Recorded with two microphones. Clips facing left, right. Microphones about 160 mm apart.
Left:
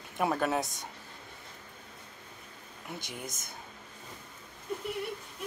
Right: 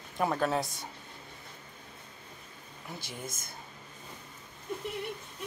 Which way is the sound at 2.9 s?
20° left (ahead or behind).